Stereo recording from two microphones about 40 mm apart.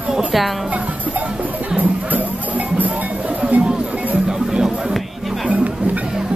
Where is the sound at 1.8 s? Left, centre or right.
Right.